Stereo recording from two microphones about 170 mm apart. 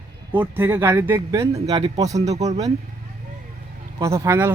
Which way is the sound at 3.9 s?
20° right (ahead or behind).